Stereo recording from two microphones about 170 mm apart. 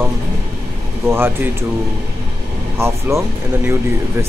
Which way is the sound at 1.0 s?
15° right (ahead or behind).